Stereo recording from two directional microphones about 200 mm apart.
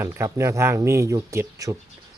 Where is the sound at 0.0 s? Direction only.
15° right (ahead or behind).